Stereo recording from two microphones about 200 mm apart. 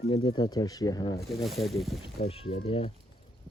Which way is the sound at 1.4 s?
Centre (ahead or behind).